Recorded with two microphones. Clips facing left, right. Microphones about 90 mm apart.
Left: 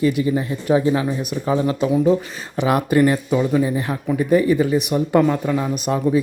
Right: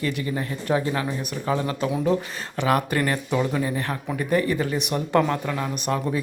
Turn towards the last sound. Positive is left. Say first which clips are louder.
# left 7 dB
turn(degrees=10)  # may be behind; listen again after turning